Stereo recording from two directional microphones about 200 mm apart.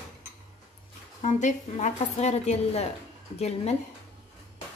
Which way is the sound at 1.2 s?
35° left (ahead or behind).